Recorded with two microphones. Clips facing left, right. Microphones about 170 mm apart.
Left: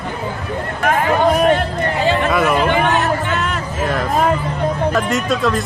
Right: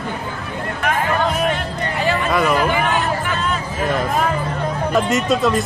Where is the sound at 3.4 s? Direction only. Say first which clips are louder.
Left 1 dB; 65° left (ahead or behind).